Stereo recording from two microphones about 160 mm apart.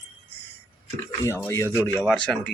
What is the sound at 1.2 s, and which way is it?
Speech, 15° left (ahead or behind).